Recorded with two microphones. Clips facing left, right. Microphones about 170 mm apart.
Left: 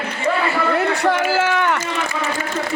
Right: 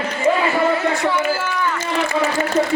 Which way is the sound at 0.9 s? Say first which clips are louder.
Left 1 dB; 75° left (ahead or behind).